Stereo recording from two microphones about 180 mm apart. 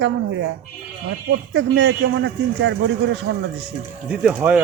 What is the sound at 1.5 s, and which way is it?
Speech, 85° right.